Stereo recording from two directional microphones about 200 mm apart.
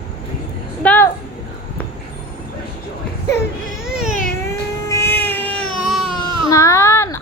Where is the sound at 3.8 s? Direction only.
5° right (ahead or behind).